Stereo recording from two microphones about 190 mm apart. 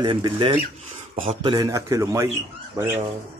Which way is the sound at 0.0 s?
25° right (ahead or behind).